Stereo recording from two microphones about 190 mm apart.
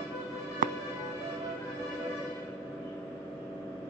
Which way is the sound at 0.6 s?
45° right (ahead or behind).